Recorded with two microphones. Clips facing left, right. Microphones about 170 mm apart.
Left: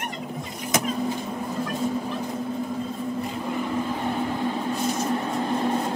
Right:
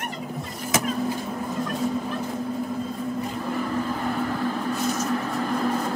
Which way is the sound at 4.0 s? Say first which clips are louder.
Even; 20° left (ahead or behind).